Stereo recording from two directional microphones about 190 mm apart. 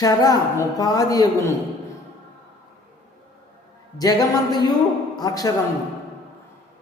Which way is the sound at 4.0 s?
20° left (ahead or behind).